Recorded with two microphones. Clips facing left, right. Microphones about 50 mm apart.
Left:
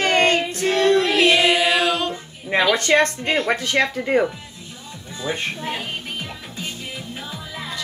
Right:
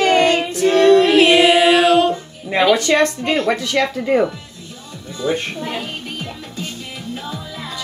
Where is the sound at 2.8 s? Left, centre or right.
Left.